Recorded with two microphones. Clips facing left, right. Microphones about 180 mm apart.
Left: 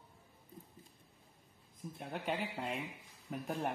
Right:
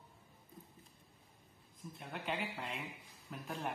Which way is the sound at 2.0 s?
40° left (ahead or behind).